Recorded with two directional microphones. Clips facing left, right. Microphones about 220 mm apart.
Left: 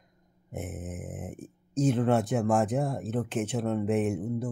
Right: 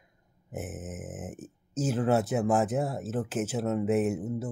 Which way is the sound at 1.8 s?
5° right (ahead or behind).